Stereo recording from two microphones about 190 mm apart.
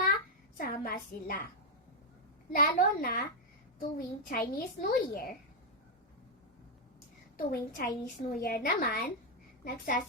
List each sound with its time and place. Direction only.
0.5 s a woman's voice: 50° left (ahead or behind)
2.6 s a child's voice: 50° left (ahead or behind)
7.3 s a child's voice: 50° left (ahead or behind)